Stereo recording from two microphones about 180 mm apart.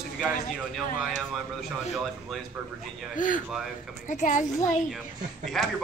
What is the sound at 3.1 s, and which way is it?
A child's voice, 45° left (ahead or behind).